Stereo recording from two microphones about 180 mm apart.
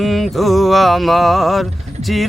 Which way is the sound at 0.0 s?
Centre (ahead or behind).